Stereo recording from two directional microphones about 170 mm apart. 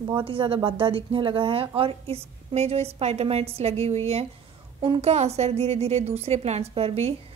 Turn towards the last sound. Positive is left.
turn(degrees=-35)  # may be behind; listen again after turning